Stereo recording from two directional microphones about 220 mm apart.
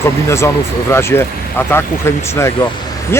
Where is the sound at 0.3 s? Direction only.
10° left (ahead or behind).